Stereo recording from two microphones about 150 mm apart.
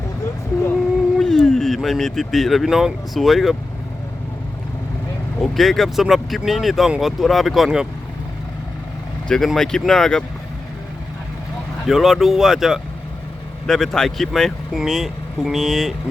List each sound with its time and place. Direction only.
1.2 s speech: 5° left (ahead or behind)
5.5 s speech: centre (ahead or behind)
9.3 s speech: centre (ahead or behind)
11.9 s speech: centre (ahead or behind)